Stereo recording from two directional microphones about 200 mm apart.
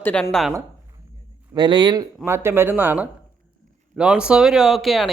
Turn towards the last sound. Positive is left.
turn(degrees=0)  # may be behind; listen again after turning